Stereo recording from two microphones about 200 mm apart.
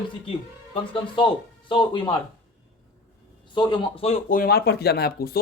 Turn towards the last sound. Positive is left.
turn(degrees=50)  # may be behind; listen again after turning